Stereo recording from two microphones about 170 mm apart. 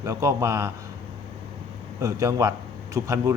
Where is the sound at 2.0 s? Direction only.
20° right (ahead or behind).